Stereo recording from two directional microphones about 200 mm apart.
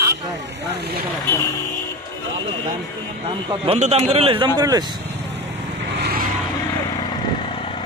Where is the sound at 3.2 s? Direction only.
30° right (ahead or behind).